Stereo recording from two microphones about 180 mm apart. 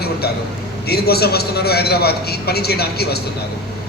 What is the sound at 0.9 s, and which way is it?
A man's voice, 60° left (ahead or behind).